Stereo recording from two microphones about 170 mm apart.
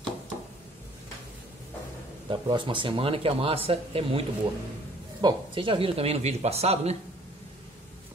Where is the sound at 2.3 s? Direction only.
30° right (ahead or behind).